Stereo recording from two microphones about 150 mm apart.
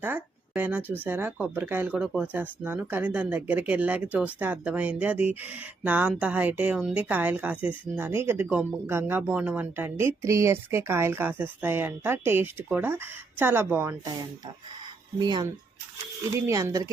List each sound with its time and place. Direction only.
0.0 s a woman's voice: 10° right (ahead or behind)